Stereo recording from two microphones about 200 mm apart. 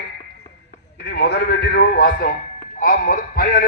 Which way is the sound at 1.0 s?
55° left (ahead or behind).